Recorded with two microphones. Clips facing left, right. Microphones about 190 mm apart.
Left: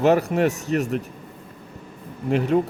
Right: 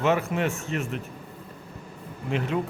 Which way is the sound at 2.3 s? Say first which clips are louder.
Left 7 dB; 45° left (ahead or behind).